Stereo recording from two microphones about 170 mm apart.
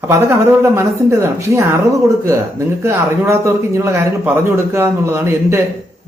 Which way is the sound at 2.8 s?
15° right (ahead or behind).